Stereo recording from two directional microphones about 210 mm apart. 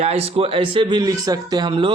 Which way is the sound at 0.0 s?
30° right (ahead or behind).